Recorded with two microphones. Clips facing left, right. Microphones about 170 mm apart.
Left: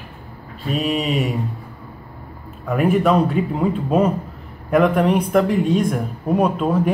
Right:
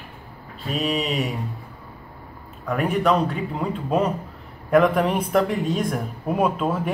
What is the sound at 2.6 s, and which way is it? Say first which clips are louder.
Speech: left 5 dB; centre (ahead or behind).